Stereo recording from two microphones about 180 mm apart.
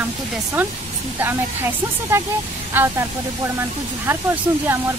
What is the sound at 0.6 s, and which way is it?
Speech, 10° right (ahead or behind).